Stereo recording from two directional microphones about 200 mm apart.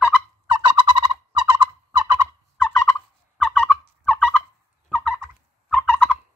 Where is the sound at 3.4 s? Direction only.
5° left (ahead or behind).